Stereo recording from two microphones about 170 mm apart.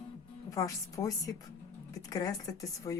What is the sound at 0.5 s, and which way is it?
Speech, 20° left (ahead or behind).